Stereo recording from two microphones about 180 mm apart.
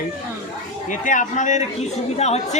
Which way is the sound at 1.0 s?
45° left (ahead or behind).